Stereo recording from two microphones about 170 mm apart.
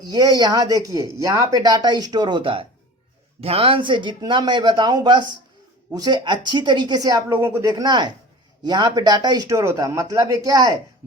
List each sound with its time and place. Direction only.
0.1 s speech: 20° right (ahead or behind)